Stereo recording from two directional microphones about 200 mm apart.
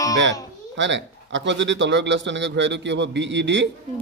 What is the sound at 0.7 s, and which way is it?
A man's voice, 65° right (ahead or behind).